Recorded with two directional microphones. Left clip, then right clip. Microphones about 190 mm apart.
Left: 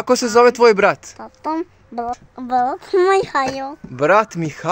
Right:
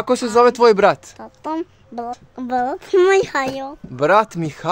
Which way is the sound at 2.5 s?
20° right (ahead or behind).